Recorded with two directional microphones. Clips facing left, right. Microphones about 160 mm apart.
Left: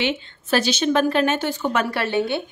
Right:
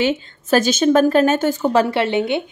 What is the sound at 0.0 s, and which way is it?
A woman's voice, 45° right (ahead or behind).